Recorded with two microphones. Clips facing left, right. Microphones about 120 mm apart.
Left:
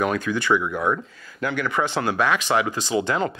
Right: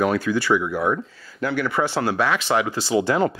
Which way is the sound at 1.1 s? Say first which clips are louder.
Right 2 dB; 15° left (ahead or behind).